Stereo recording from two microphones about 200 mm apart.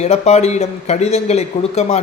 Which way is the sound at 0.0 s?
35° left (ahead or behind).